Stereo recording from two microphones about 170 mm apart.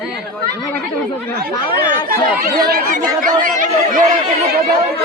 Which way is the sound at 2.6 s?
55° right (ahead or behind).